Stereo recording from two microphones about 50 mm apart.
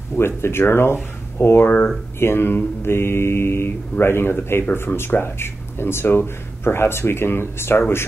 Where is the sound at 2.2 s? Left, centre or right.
Left.